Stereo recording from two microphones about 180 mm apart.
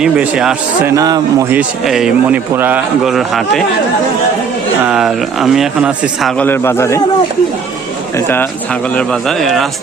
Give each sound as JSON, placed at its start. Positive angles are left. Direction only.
{"t": 0.0, "sound": "a man's voice", "side_deg": -5}
{"t": 0.9, "sound": "speech", "side_deg": -20}
{"t": 1.8, "sound": "a man's voice", "side_deg": 0}
{"t": 4.9, "sound": "a man's voice", "side_deg": -5}
{"t": 6.5, "sound": "a man's voice", "side_deg": 15}
{"t": 9.0, "sound": "a man's voice", "side_deg": 0}